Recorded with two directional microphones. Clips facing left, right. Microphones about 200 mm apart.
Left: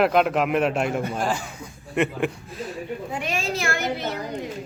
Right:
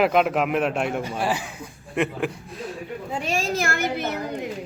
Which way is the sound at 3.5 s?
50° right (ahead or behind).